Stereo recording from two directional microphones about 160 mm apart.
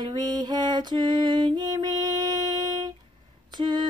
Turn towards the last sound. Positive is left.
turn(degrees=-30)  # may be behind; listen again after turning